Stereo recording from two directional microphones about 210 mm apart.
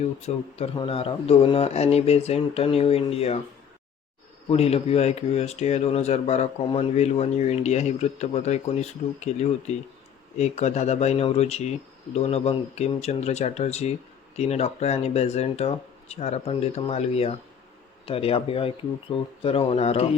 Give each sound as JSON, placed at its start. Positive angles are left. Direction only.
{"t": 0.0, "sound": "speech", "side_deg": 30}
{"t": 4.4, "sound": "speech", "side_deg": 30}